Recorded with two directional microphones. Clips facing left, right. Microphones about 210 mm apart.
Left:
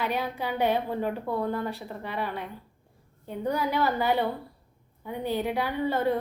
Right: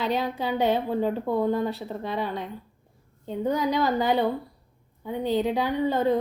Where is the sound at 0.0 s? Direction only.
15° right (ahead or behind).